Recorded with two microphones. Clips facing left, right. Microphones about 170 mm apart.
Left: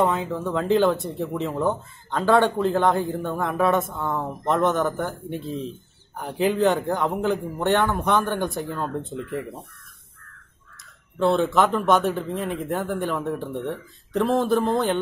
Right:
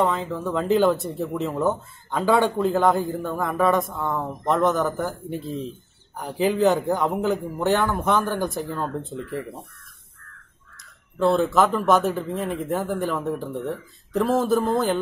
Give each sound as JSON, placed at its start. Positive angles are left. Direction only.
{"t": 0.0, "sound": "speech", "side_deg": 5}
{"t": 11.1, "sound": "speech", "side_deg": 0}